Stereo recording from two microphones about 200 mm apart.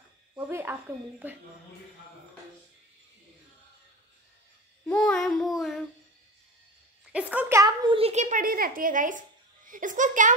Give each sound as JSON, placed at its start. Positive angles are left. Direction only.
{"t": 0.4, "sound": "a woman's voice", "side_deg": -10}
{"t": 4.8, "sound": "child singing", "side_deg": 5}
{"t": 7.1, "sound": "a child's voice", "side_deg": -5}